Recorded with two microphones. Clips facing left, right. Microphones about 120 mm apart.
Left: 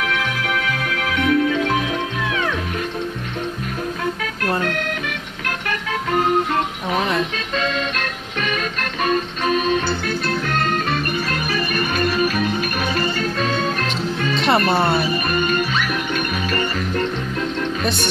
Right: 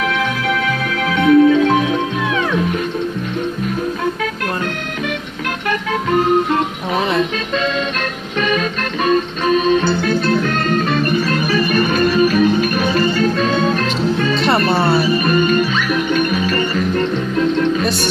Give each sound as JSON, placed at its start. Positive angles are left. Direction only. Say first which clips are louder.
{"t": 0.7, "sound": "music", "louder": "right 4 dB", "side_deg": -30}
{"t": 8.4, "sound": "music", "louder": "right 6 dB", "side_deg": -30}
{"t": 11.7, "sound": "music", "louder": "right 6 dB", "side_deg": -30}
{"t": 14.7, "sound": "speech", "louder": "right 3 dB", "side_deg": -5}
{"t": 15.2, "sound": "music", "louder": "right 6 dB", "side_deg": -35}